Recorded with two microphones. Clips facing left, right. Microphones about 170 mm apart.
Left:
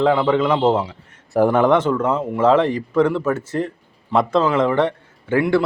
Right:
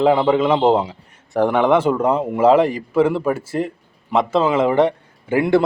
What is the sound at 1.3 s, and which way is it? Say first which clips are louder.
Speech: left 1 dB; 5° left (ahead or behind).